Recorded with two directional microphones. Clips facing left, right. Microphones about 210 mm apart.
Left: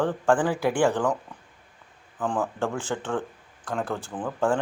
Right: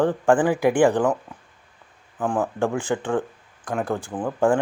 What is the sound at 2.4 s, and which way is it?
Speech, 15° right (ahead or behind).